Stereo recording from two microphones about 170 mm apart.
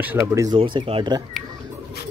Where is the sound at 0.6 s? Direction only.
30° right (ahead or behind).